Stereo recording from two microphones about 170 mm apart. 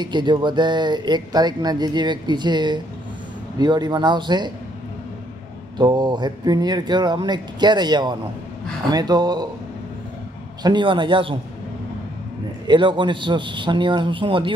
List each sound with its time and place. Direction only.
0.0 s speech: 25° right (ahead or behind)
5.8 s speech: 25° right (ahead or behind)
10.6 s speech: 25° right (ahead or behind)
12.6 s speech: 30° right (ahead or behind)